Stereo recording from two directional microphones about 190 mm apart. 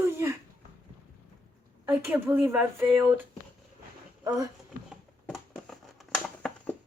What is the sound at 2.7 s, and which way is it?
Speech, centre (ahead or behind).